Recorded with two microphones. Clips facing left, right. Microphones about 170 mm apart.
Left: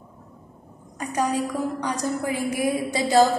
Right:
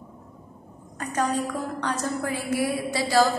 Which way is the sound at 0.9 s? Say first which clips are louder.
Left 1 dB; 10° left (ahead or behind).